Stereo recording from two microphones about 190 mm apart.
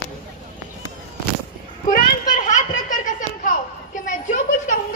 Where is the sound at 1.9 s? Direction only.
45° left (ahead or behind).